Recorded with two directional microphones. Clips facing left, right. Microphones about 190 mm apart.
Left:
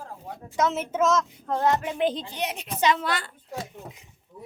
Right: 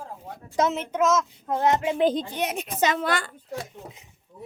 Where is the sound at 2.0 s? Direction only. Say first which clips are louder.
Right 3 dB; 45° right (ahead or behind).